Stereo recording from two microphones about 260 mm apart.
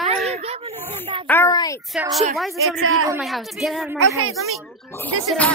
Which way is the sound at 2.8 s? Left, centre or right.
Right.